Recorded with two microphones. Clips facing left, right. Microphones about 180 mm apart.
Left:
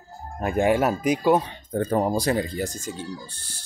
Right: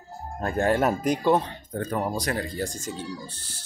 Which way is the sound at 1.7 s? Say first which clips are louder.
Left 6 dB; 30° left (ahead or behind).